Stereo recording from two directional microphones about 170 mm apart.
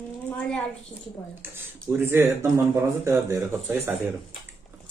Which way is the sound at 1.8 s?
15° right (ahead or behind).